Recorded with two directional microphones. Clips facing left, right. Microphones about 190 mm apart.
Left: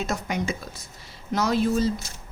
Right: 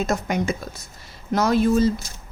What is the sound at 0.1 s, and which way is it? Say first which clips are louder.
A woman's voice: right 4 dB; 45° right (ahead or behind).